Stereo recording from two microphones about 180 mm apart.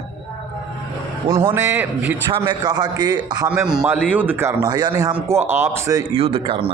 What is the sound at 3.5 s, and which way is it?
Speech, 5° right (ahead or behind).